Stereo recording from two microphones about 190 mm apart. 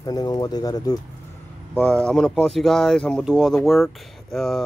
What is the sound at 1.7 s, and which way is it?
Speech, 5° left (ahead or behind).